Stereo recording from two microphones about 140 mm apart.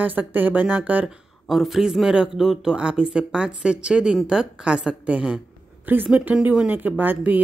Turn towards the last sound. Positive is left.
turn(degrees=-15)  # may be behind; listen again after turning